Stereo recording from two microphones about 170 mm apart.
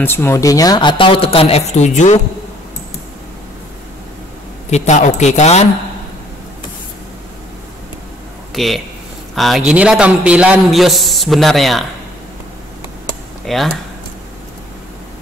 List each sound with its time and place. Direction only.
0.0 s speech: 15° left (ahead or behind); by 2.1 s 45° left (ahead or behind)
4.6 s speech: 40° left (ahead or behind)
8.5 s a man's voice: centre (ahead or behind)
13.5 s a man's voice: centre (ahead or behind)